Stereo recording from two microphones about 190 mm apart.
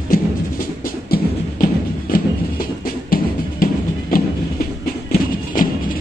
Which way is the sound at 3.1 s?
50° left (ahead or behind).